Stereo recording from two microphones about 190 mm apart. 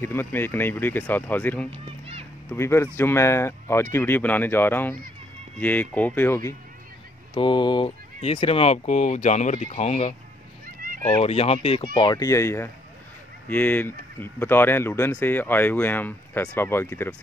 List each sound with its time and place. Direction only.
0.0 s speech: 10° left (ahead or behind)
1.7 s music: 30° right (ahead or behind)
2.5 s speech: 15° left (ahead or behind)
7.3 s speech: 25° left (ahead or behind)